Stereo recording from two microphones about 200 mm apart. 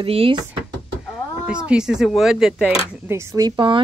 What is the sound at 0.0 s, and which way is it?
Speech, 25° right (ahead or behind).